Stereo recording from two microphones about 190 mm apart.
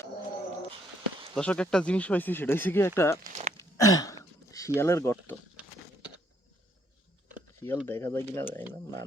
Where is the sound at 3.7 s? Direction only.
20° left (ahead or behind).